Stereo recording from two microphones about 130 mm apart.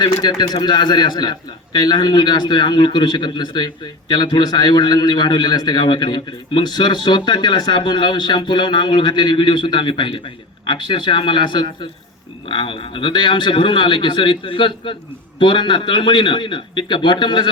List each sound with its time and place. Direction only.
0.0 s a man's voice: 35° left (ahead or behind)